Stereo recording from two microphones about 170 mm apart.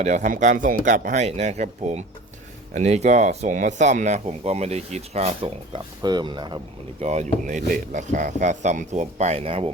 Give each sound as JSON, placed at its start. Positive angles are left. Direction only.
{"t": 0.0, "sound": "speech", "side_deg": -45}
{"t": 7.0, "sound": "speech", "side_deg": -40}